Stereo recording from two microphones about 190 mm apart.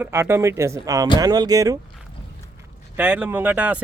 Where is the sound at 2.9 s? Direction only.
10° right (ahead or behind).